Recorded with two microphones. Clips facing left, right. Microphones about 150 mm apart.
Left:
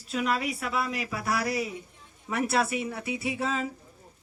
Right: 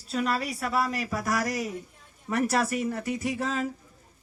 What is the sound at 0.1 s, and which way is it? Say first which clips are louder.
A man's voice: even; 40° right (ahead or behind).